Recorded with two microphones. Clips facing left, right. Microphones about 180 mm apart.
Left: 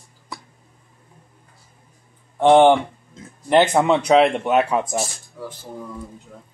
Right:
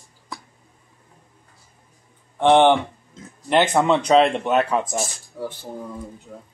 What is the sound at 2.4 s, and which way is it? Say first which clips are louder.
Speech: left 2 dB; 10° left (ahead or behind).